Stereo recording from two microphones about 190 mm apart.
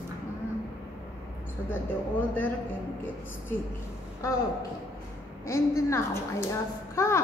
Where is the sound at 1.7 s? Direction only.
10° left (ahead or behind).